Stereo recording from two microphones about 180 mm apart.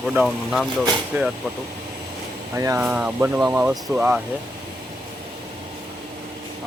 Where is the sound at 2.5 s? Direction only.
15° right (ahead or behind).